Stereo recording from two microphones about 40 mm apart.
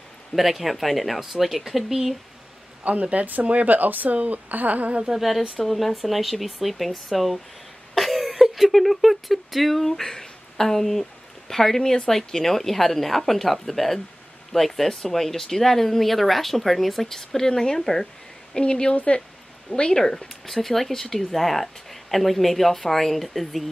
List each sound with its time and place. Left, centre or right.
0.4 s speech: centre
2.8 s a woman's voice: right
5.1 s speech: centre
18.6 s speech: left; by 23.6 s centre